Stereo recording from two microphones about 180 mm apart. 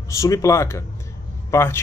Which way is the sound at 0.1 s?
15° left (ahead or behind).